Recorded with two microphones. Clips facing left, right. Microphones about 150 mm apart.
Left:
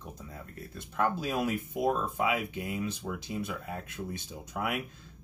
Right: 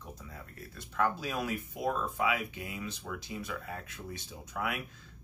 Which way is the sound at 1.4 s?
20° left (ahead or behind).